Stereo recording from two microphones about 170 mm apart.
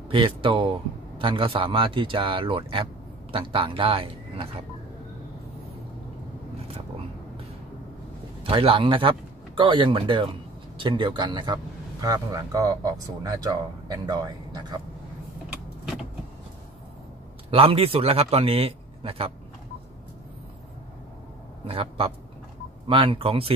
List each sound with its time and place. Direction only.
0.1 s a man's voice: 30° right (ahead or behind)
8.5 s a man's voice: 30° right (ahead or behind)
17.5 s a man's voice: 35° right (ahead or behind)
21.6 s a man's voice: 35° right (ahead or behind)